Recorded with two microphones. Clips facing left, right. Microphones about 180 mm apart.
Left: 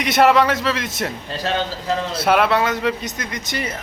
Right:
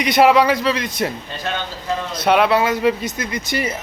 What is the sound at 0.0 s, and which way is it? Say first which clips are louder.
A man's voice: right 1 dB; centre (ahead or behind).